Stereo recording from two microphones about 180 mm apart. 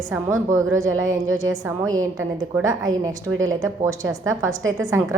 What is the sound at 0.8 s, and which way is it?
Speech, 90° right.